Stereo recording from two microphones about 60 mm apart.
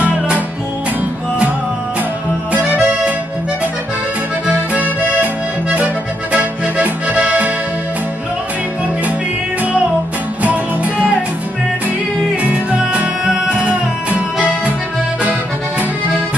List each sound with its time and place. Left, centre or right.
0.0 s music: right
2.5 s accordion: right
4.5 s accordion: right
10.4 s music: right
12.7 s music: right